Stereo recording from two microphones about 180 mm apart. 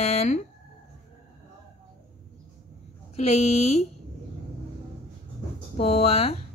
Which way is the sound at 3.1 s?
35° left (ahead or behind).